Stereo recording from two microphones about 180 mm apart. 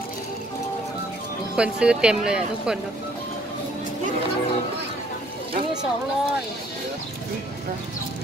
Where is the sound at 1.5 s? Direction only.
5° right (ahead or behind).